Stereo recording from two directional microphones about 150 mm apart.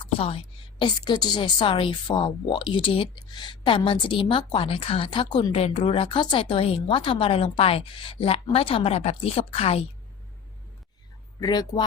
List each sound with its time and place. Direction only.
0.0 s a woman's voice: 40° left (ahead or behind)
11.3 s speech: 25° left (ahead or behind)